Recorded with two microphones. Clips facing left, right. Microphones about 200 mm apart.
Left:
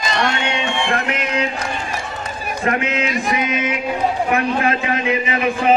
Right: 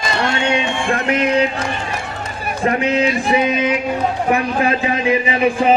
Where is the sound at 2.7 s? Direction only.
35° right (ahead or behind).